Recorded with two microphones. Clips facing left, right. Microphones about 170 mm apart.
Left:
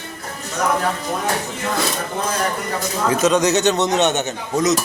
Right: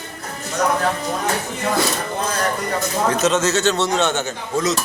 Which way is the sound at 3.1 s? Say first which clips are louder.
Left 5 dB; 15° left (ahead or behind).